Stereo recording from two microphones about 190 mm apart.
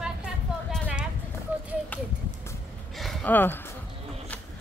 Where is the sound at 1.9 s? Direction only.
10° left (ahead or behind).